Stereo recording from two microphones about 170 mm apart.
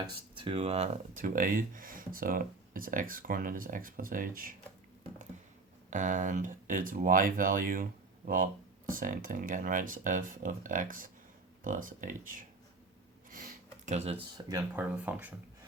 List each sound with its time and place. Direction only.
0.0 s speech: 30° right (ahead or behind)
1.1 s speech: 55° right (ahead or behind)
5.9 s speech: 50° right (ahead or behind)
13.3 s a sound: 50° right (ahead or behind)
14.7 s speech: 10° right (ahead or behind)